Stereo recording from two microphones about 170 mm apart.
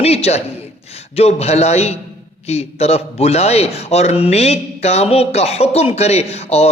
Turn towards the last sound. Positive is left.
turn(degrees=40)  # may be behind; listen again after turning